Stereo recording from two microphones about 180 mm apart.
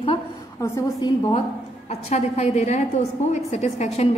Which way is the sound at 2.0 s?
40° left (ahead or behind).